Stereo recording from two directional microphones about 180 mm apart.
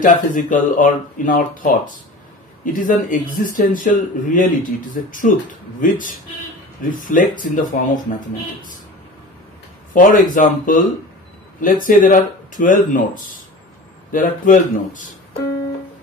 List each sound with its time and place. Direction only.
0.0 s speech: 45° left (ahead or behind)
9.9 s speech: 50° left (ahead or behind)